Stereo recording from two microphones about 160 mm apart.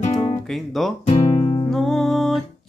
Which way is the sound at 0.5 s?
Centre (ahead or behind).